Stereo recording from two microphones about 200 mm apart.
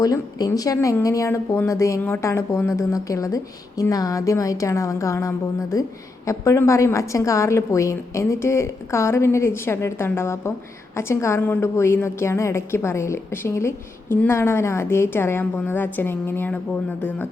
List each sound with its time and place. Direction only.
0.0 s a woman's voice: 20° left (ahead or behind)